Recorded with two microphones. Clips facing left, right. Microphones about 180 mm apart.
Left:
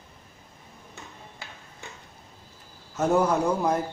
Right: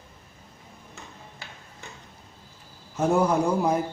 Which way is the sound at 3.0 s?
10° right (ahead or behind).